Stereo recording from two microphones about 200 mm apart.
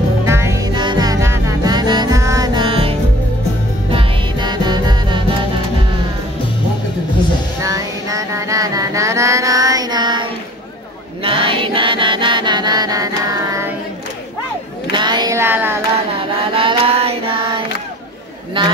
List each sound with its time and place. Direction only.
0.2 s music: 15° right (ahead or behind)
7.6 s mantra: 15° right (ahead or behind)
11.2 s music: 25° right (ahead or behind)
14.9 s a sound: 20° right (ahead or behind)
16.5 s mantra: 25° right (ahead or behind)